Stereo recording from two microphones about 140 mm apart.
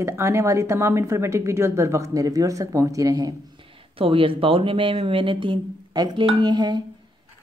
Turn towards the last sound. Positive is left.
turn(degrees=-30)  # may be behind; listen again after turning